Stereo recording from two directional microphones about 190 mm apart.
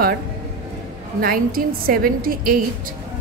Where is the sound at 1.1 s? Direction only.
50° right (ahead or behind).